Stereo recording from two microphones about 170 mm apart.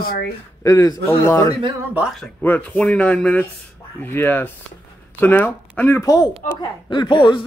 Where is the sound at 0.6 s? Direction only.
20° left (ahead or behind).